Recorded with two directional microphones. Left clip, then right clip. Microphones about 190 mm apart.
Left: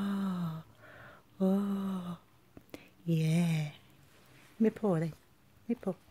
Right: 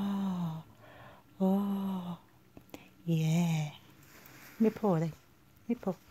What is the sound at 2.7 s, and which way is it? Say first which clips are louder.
Speech: even; 20° left (ahead or behind).